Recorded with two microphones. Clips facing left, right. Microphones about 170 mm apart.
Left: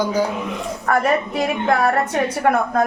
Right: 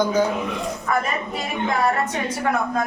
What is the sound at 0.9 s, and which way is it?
A man's voice, 70° left (ahead or behind).